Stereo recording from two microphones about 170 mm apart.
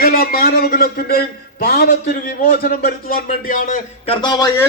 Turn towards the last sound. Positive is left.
turn(degrees=25)  # may be behind; listen again after turning